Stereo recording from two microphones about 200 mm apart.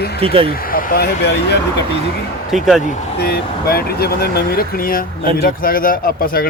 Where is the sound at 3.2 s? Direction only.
50° left (ahead or behind).